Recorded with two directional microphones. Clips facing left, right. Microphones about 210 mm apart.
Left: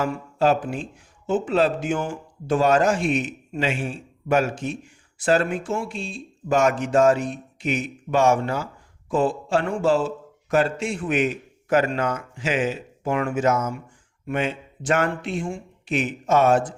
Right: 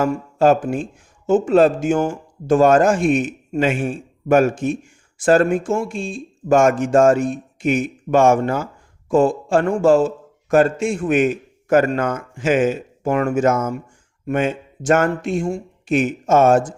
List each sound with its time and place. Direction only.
0.0 s a man's voice: 45° right (ahead or behind)